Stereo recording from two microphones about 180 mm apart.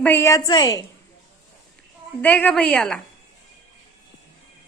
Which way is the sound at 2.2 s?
10° left (ahead or behind).